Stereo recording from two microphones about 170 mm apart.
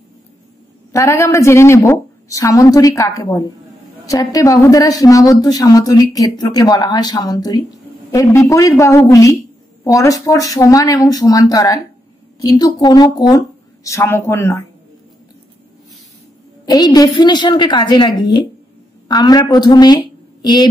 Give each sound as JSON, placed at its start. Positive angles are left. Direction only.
{"t": 0.9, "sound": "a woman's voice", "side_deg": 15}
{"t": 16.6, "sound": "a woman's voice", "side_deg": 25}